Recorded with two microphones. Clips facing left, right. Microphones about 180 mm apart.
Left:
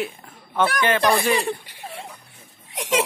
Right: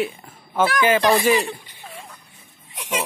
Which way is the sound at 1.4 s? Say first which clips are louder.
Left 4 dB; 75° left (ahead or behind).